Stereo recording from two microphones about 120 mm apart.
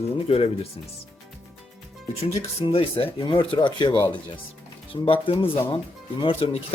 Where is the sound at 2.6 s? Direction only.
50° left (ahead or behind).